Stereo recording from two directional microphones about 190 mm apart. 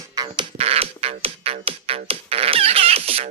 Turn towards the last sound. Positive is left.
turn(degrees=-30)  # may be behind; listen again after turning